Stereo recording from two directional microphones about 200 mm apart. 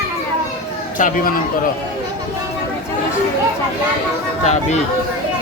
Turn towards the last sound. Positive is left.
turn(degrees=35)  # may be behind; listen again after turning